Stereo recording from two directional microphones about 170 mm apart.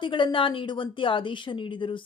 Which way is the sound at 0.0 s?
30° left (ahead or behind).